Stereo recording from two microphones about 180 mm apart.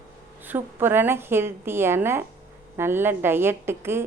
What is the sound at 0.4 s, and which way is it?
A woman's voice, 10° right (ahead or behind).